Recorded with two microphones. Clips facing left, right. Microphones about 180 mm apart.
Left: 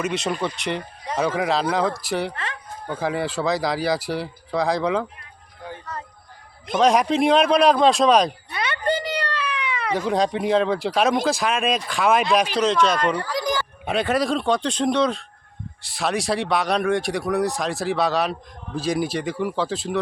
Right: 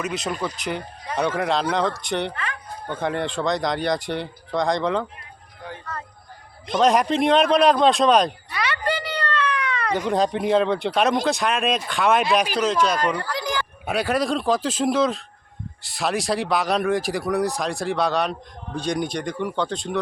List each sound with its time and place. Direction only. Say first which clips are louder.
0.0 s speech: left 2 dB; centre (ahead or behind)
2.3 s speech: right 1 dB; 25° left (ahead or behind)
2.9 s speech: left 1 dB; 5° left (ahead or behind)
6.7 s speech: even; centre (ahead or behind)
9.0 s speech: right 2 dB; 15° left (ahead or behind)